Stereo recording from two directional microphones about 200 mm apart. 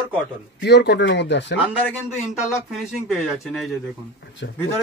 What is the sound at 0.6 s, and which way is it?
Speech, 60° left (ahead or behind).